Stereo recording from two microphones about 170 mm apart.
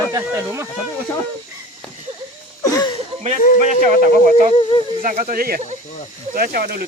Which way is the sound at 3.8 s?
45° right (ahead or behind).